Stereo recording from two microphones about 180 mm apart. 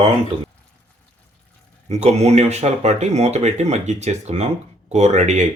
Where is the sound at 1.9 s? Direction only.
35° right (ahead or behind).